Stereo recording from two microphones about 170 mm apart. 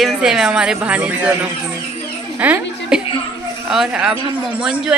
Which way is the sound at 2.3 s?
10° right (ahead or behind).